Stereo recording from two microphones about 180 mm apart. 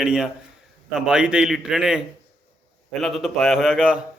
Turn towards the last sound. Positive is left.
turn(degrees=-5)  # may be behind; listen again after turning